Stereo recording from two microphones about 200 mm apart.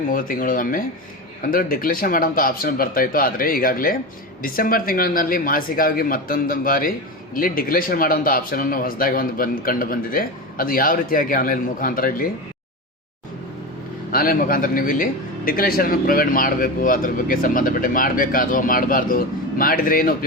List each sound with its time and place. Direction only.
0.1 s a man's voice: 45° left (ahead or behind)
14.1 s a man's voice: 45° left (ahead or behind)